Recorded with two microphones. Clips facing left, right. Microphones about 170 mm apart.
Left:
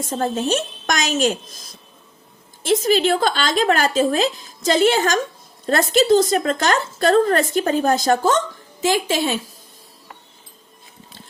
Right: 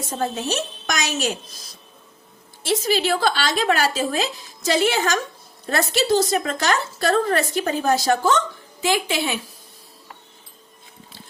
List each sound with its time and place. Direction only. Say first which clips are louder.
0.1 s speech: left 4 dB; 45° left (ahead or behind)
2.6 s speech: left 4 dB; 45° left (ahead or behind)